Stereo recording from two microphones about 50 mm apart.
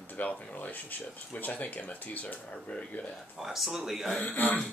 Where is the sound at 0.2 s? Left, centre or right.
Left.